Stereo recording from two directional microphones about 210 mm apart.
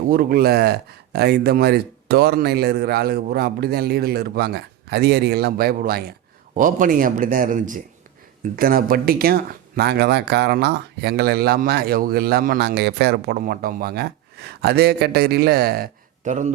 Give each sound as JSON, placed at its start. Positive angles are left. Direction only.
{"t": 0.1, "sound": "speech", "side_deg": -45}